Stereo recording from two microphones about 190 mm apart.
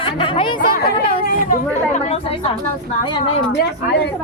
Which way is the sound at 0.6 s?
50° left (ahead or behind).